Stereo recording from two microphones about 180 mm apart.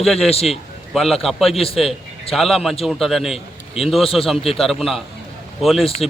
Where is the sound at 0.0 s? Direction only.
Centre (ahead or behind).